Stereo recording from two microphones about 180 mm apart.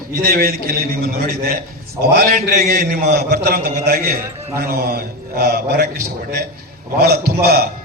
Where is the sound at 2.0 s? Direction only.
55° right (ahead or behind).